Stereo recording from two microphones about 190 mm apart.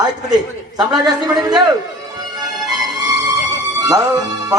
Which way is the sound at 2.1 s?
20° right (ahead or behind).